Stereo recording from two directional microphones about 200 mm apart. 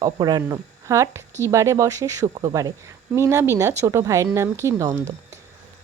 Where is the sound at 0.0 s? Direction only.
20° right (ahead or behind).